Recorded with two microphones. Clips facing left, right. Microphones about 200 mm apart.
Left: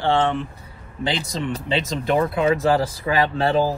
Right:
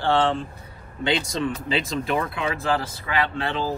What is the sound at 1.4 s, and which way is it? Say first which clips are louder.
Speech: left 1 dB; 30° left (ahead or behind).